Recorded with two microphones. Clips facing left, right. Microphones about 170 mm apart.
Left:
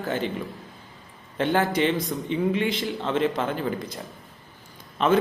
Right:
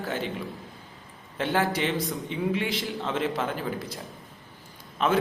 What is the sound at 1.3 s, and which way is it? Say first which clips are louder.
A man's voice: left 3 dB; 5° right (ahead or behind).